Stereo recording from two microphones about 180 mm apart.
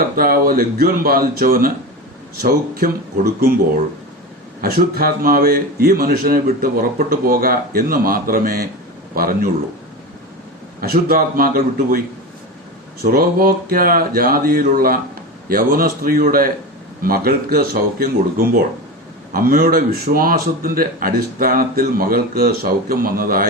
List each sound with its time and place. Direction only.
0.2 s a man's voice: 55° right (ahead or behind)
4.6 s a man's voice: 55° right (ahead or behind)
10.8 s speech: 55° right (ahead or behind)
13.0 s a man's voice: 55° right (ahead or behind)